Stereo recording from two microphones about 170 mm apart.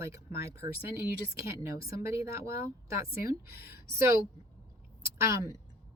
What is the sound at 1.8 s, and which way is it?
Speech, 15° right (ahead or behind).